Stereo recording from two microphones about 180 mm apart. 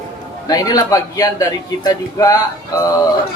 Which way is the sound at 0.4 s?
20° left (ahead or behind).